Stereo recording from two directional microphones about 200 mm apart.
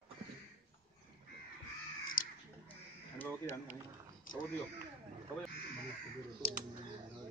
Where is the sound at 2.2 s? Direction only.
45° left (ahead or behind).